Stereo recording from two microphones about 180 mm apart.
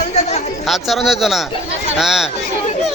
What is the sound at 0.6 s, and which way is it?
Speech, centre (ahead or behind).